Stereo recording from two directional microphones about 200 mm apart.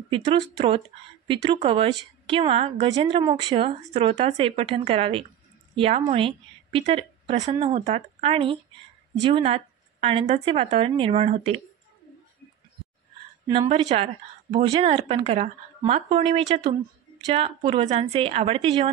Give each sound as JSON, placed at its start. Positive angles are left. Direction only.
{"t": 0.1, "sound": "speech", "side_deg": -30}
{"t": 13.5, "sound": "speech", "side_deg": -25}